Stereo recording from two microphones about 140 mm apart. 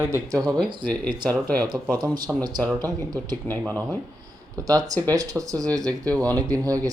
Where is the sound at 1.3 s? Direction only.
10° left (ahead or behind).